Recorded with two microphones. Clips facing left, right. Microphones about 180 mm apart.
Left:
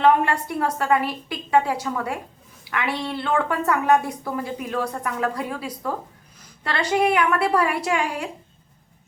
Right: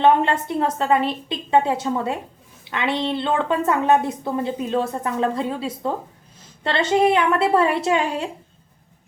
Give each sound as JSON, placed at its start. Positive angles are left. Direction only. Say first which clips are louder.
{"t": 0.0, "sound": "a woman's voice", "louder": "right 1 dB", "side_deg": -25}